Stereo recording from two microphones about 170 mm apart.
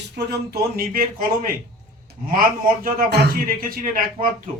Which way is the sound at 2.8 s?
55° right (ahead or behind).